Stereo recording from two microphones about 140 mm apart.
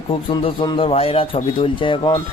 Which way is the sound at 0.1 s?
40° left (ahead or behind).